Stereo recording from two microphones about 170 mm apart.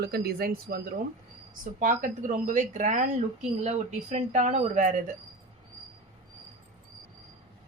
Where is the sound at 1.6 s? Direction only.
50° right (ahead or behind).